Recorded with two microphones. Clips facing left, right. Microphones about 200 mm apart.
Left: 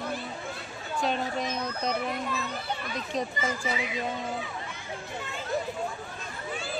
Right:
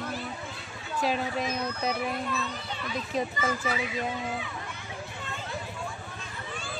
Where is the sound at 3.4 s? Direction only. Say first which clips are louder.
Right 1 dB; 20° left (ahead or behind).